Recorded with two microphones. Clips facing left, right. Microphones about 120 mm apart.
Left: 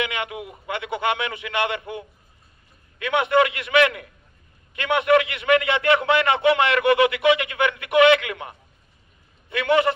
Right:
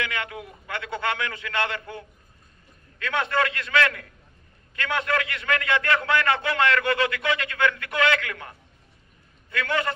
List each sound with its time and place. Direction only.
0.0 s a man's voice: 20° left (ahead or behind)